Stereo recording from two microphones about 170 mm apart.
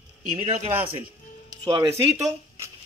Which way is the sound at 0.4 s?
40° right (ahead or behind).